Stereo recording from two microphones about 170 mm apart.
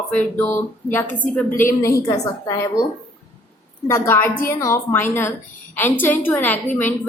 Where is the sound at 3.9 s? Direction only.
15° left (ahead or behind).